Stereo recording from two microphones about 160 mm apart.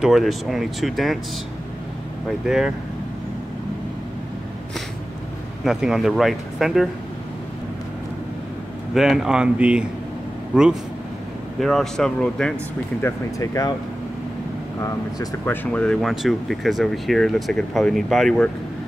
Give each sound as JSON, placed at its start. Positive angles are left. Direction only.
{"t": 0.0, "sound": "speech", "side_deg": 0}
{"t": 2.4, "sound": "speech", "side_deg": -5}
{"t": 5.6, "sound": "speech", "side_deg": 0}
{"t": 8.9, "sound": "speech", "side_deg": 0}
{"t": 13.0, "sound": "speech", "side_deg": 20}
{"t": 14.8, "sound": "speech", "side_deg": 15}